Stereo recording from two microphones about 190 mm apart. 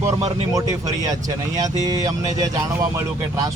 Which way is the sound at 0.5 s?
20° right (ahead or behind).